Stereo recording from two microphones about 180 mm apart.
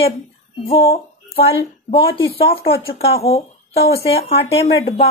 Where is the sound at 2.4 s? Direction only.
30° left (ahead or behind).